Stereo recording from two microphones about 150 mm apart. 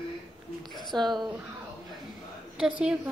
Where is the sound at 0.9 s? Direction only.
30° right (ahead or behind).